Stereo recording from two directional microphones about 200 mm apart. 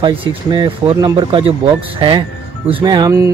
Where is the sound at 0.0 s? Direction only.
20° right (ahead or behind).